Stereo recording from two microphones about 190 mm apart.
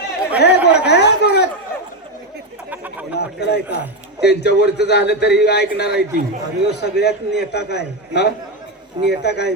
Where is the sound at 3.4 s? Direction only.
60° left (ahead or behind).